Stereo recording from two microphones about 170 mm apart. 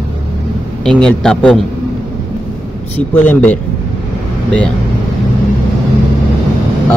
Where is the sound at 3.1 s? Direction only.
10° left (ahead or behind).